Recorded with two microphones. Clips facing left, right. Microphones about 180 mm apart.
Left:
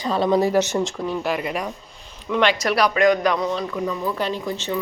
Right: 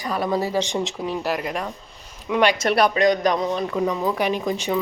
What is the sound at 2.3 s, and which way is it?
Speech, 10° right (ahead or behind).